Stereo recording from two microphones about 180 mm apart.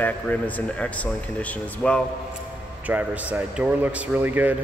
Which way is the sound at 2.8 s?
10° right (ahead or behind).